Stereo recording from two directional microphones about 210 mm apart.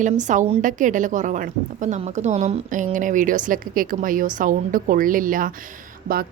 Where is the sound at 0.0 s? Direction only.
35° right (ahead or behind).